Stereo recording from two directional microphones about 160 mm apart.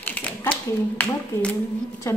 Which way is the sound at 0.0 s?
10° left (ahead or behind).